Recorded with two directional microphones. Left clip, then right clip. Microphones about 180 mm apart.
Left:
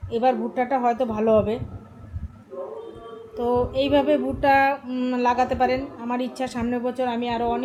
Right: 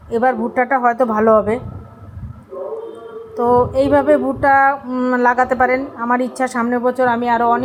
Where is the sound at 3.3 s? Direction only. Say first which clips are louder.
Right 9 dB; 15° right (ahead or behind).